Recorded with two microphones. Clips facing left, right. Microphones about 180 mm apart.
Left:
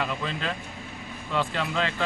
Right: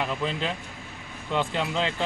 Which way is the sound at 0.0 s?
20° right (ahead or behind).